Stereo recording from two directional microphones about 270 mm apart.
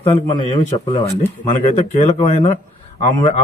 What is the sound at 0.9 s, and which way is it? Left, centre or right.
Speech, centre.